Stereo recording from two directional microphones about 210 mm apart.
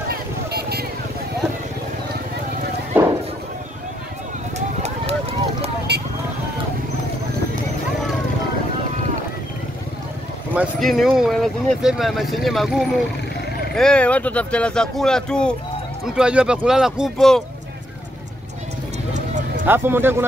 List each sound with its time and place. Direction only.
0.1 s vehicle: 50° right (ahead or behind)
2.9 s a sound: 10° right (ahead or behind)
4.6 s run: 30° right (ahead or behind)
5.9 s vehicle: 50° right (ahead or behind)
10.5 s speech: centre (ahead or behind)
19.1 s music: 35° right (ahead or behind)
19.6 s speech: 10° right (ahead or behind)